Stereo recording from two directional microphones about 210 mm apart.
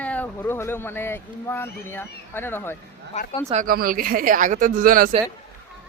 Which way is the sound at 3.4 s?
40° right (ahead or behind).